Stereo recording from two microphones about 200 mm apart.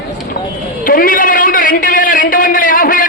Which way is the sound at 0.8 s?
45° left (ahead or behind).